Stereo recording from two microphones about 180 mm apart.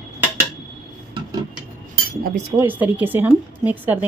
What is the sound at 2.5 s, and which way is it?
Speech, 10° right (ahead or behind).